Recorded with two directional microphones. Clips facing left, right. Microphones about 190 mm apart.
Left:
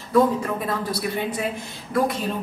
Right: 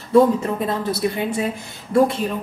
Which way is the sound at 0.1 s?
25° right (ahead or behind).